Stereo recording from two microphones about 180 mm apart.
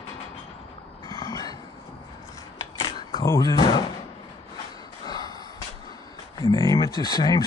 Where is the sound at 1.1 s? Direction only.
20° left (ahead or behind).